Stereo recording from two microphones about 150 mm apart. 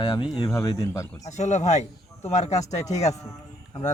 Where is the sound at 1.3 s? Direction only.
50° left (ahead or behind).